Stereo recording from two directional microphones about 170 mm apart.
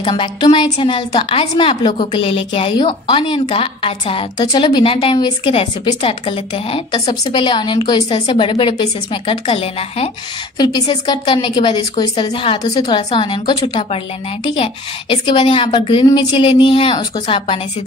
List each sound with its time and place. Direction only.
0.0 s a woman's voice: 30° left (ahead or behind)